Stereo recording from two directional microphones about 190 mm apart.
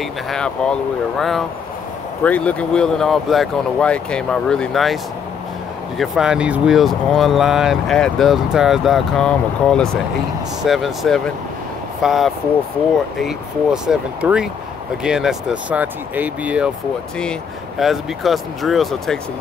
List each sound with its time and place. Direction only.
0.3 s speech: 5° left (ahead or behind)
5.9 s speech: 5° right (ahead or behind)